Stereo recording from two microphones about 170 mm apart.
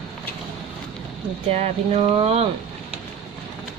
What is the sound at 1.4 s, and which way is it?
Speech, 35° right (ahead or behind).